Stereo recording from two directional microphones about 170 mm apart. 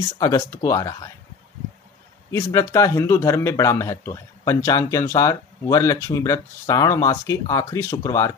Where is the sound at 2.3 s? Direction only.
15° left (ahead or behind).